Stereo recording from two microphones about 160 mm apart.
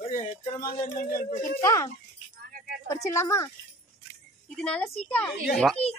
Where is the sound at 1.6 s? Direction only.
20° left (ahead or behind).